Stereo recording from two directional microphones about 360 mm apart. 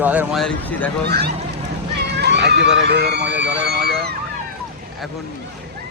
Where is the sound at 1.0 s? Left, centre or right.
Right.